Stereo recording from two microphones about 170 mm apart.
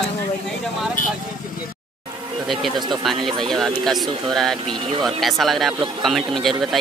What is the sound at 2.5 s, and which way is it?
Speech, centre (ahead or behind).